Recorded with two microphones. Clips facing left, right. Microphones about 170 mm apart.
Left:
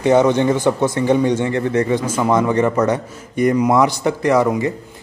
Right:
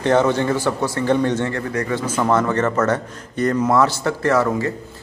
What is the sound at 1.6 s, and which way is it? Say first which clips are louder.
A man's voice: left 5 dB; 25° left (ahead or behind).